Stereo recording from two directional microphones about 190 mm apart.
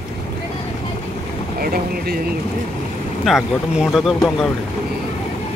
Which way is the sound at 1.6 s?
55° right (ahead or behind).